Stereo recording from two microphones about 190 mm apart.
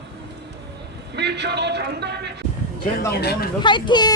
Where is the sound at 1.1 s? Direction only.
65° right (ahead or behind).